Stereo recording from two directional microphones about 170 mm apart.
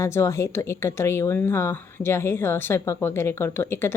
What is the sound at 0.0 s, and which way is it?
Speech, 15° left (ahead or behind).